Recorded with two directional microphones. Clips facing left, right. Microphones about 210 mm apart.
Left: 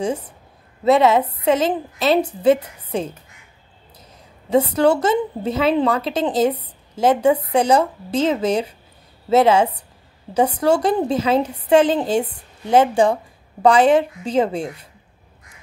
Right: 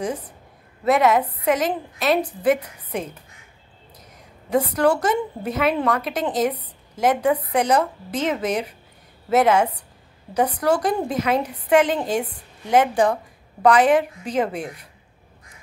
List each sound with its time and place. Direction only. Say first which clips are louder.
0.8 s a woman's voice: left 3 dB; 25° left (ahead or behind)
4.5 s a woman's voice: left 3 dB; 25° left (ahead or behind)